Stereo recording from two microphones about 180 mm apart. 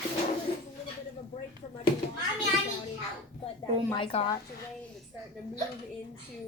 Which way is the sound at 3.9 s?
30° left (ahead or behind).